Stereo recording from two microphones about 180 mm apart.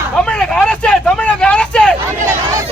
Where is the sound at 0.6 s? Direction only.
5° left (ahead or behind).